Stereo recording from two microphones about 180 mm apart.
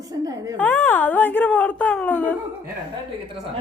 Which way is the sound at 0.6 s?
10° left (ahead or behind).